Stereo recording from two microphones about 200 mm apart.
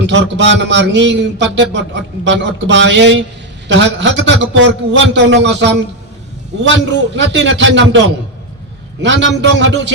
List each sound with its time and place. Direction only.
0.0 s speech: 60° right (ahead or behind)
7.1 s speech: 65° right (ahead or behind)